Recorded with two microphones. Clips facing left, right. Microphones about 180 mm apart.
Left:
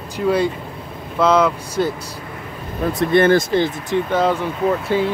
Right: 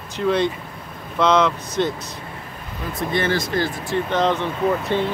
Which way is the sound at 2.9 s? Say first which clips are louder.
Left 8 dB; 55° left (ahead or behind).